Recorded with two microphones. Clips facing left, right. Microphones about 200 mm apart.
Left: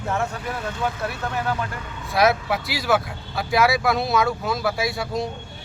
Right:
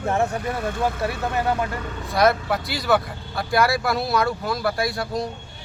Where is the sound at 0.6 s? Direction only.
55° right (ahead or behind).